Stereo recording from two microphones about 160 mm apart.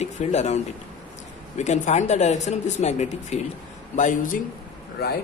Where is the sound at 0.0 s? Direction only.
45° left (ahead or behind).